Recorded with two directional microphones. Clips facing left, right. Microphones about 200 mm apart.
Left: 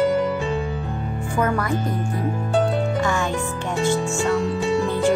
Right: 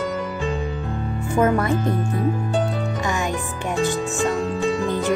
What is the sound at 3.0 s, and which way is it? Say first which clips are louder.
Music: left 2 dB; 15° right (ahead or behind).